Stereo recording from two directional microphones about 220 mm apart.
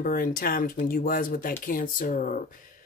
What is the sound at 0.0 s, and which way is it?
Speech, 40° left (ahead or behind).